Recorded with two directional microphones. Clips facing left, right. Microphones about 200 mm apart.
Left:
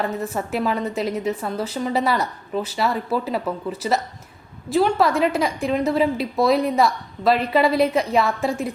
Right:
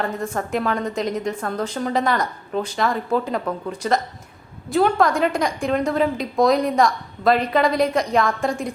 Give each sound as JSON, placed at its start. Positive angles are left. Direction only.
{"t": 0.2, "sound": "a woman's voice", "side_deg": 5}